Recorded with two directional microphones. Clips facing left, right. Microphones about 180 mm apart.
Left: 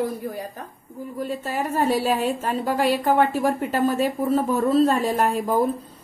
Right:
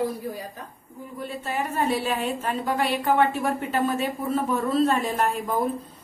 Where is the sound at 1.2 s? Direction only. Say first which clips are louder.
Left 1 dB; 40° left (ahead or behind).